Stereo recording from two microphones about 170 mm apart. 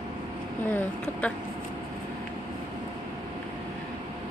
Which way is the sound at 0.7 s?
10° left (ahead or behind).